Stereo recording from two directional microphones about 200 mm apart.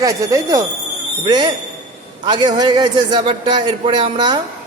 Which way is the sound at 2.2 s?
20° right (ahead or behind).